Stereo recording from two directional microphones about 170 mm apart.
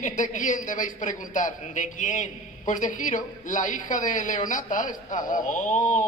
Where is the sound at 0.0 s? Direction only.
50° left (ahead or behind).